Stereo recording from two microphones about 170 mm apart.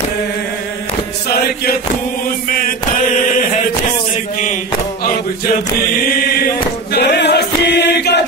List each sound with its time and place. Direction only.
3.2 s chant: 45° left (ahead or behind)
6.9 s choir: 80° left